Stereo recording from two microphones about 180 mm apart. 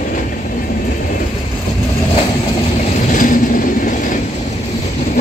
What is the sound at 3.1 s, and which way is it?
Train, 50° left (ahead or behind).